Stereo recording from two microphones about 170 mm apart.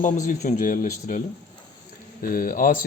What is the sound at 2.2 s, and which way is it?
Speech, 55° left (ahead or behind).